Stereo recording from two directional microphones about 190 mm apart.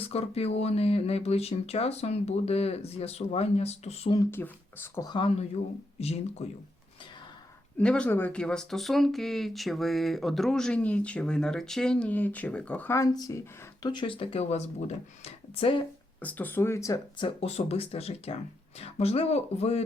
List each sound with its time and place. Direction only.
0.0 s speech: 30° left (ahead or behind)
4.2 s speech: 10° left (ahead or behind); by 6.5 s 35° left (ahead or behind)
7.8 s speech: 5° left (ahead or behind); by 15.8 s 30° left (ahead or behind)
16.2 s speech: 10° left (ahead or behind); by 19.8 s 35° left (ahead or behind)